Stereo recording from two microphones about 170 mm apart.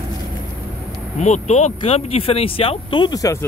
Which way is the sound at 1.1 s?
45° left (ahead or behind).